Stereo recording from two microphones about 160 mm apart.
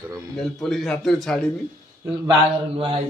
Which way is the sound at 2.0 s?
30° right (ahead or behind).